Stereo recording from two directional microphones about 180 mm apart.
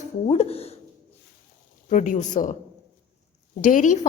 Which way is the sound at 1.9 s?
45° left (ahead or behind).